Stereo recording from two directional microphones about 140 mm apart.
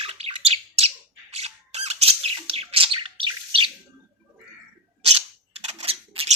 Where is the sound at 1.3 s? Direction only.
50° right (ahead or behind).